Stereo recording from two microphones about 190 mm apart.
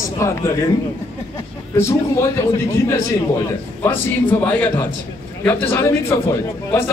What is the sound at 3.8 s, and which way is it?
A man's voice, 10° left (ahead or behind).